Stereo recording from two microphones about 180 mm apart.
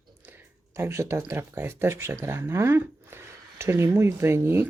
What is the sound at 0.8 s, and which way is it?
Speech, 15° right (ahead or behind).